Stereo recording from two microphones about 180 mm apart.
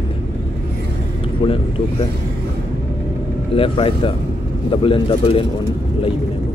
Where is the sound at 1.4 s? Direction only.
30° left (ahead or behind).